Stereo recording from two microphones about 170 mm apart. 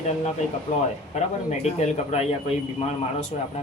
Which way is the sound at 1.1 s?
45° left (ahead or behind).